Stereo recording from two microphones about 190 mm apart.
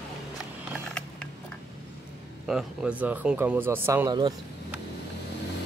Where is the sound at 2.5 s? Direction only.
5° right (ahead or behind); by 4.3 s 20° right (ahead or behind).